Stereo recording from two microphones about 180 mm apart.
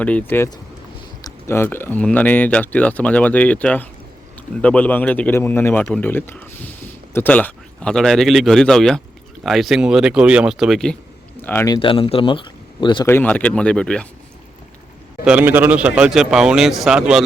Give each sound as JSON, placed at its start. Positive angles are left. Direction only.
{"t": 0.0, "sound": "speech", "side_deg": 10}
{"t": 11.4, "sound": "speech", "side_deg": 15}
{"t": 11.8, "sound": "speech", "side_deg": 30}
{"t": 13.1, "sound": "speech", "side_deg": 10}
{"t": 15.2, "sound": "speech", "side_deg": -5}